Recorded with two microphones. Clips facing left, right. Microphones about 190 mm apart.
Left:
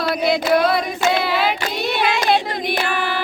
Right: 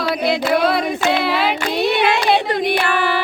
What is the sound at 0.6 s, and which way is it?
Child singing, centre (ahead or behind).